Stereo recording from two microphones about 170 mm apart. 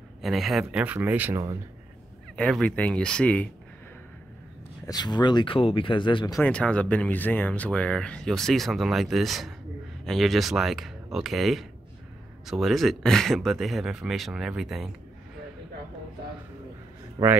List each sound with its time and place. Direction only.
0.2 s speech: centre (ahead or behind)
2.3 s speech: 5° left (ahead or behind)
4.8 s speech: 25° left (ahead or behind)
6.4 s speech: 5° left (ahead or behind)
17.2 s speech: 25° right (ahead or behind)